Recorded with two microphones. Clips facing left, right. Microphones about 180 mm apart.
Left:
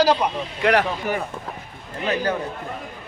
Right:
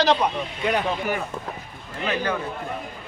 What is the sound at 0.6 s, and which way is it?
Speech, 70° left (ahead or behind).